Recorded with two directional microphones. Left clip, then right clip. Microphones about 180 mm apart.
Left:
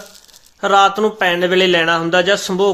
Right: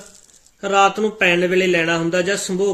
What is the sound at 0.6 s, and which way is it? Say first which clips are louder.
A man's voice: left 4 dB; 10° right (ahead or behind).